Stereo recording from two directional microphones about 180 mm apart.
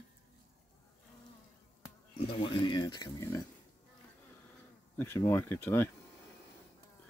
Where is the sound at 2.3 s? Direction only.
25° left (ahead or behind).